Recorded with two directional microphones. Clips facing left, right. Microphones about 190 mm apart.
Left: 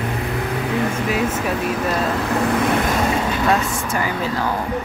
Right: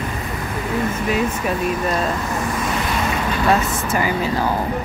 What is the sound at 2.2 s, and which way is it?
Vehicle, 60° left (ahead or behind).